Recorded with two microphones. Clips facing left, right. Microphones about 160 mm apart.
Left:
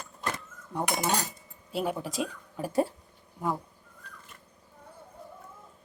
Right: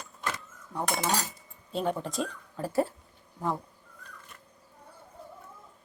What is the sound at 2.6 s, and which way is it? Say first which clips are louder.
Speech: left 1 dB; 15° left (ahead or behind).